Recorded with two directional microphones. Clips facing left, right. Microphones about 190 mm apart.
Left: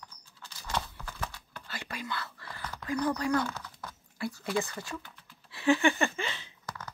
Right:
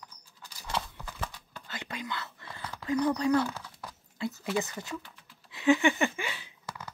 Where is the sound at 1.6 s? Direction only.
20° right (ahead or behind).